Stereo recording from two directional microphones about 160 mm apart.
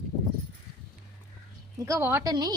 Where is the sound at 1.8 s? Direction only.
20° right (ahead or behind).